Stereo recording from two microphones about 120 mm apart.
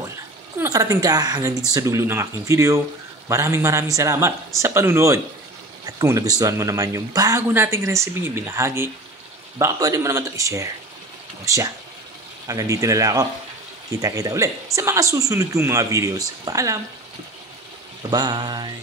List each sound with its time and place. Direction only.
0.6 s a woman's voice: 30° right (ahead or behind)
18.1 s mantra: 35° right (ahead or behind)